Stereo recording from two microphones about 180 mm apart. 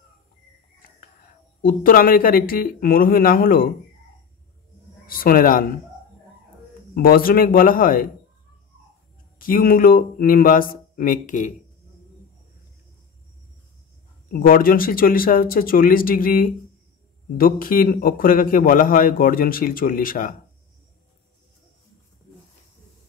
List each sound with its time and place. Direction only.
1.6 s a man's voice: 55° left (ahead or behind)
5.0 s a man's voice: 55° left (ahead or behind)
7.0 s a man's voice: 55° left (ahead or behind)
9.4 s a man's voice: 50° left (ahead or behind)
14.3 s a man's voice: 50° left (ahead or behind)